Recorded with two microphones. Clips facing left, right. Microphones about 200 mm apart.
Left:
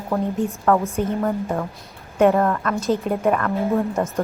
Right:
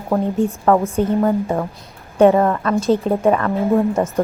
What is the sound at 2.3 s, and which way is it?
Speech, 15° right (ahead or behind).